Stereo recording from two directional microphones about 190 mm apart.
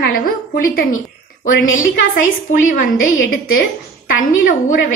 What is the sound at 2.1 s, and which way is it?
Speech, 45° left (ahead or behind).